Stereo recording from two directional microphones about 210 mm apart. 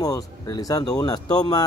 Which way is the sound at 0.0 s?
15° left (ahead or behind).